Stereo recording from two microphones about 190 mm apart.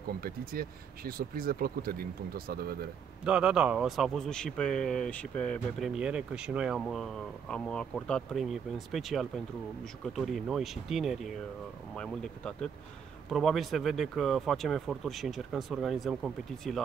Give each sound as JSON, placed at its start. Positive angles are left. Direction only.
{"t": 0.2, "sound": "speech", "side_deg": -50}
{"t": 3.3, "sound": "speech", "side_deg": -5}